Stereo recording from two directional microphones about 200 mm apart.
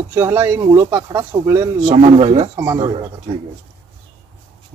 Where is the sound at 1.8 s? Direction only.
30° right (ahead or behind).